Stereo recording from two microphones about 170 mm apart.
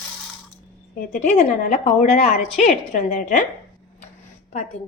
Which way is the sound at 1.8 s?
40° left (ahead or behind).